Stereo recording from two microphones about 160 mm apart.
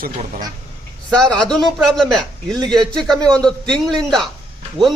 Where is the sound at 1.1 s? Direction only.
5° left (ahead or behind).